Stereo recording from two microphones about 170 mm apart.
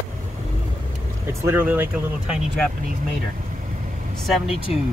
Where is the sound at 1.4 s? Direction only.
10° right (ahead or behind).